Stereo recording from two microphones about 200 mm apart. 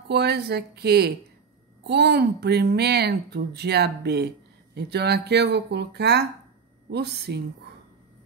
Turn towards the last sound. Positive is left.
turn(degrees=-55)  # may be behind; listen again after turning